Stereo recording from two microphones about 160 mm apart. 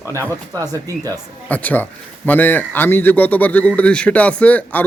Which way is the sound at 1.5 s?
10° left (ahead or behind).